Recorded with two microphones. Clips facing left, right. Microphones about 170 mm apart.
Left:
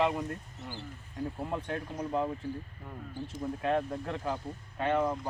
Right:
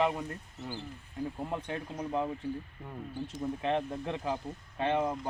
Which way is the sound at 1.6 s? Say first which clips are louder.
Left 1 dB; 15° right (ahead or behind).